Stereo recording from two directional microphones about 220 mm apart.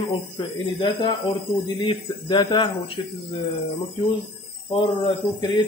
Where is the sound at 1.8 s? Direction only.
20° left (ahead or behind).